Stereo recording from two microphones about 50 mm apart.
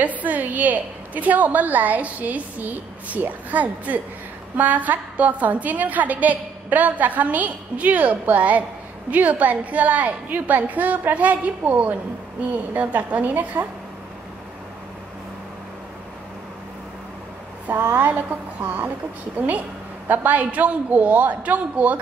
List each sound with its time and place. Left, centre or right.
0.0 s a woman's voice: right
17.9 s a woman's voice: right
20.1 s a woman's voice: right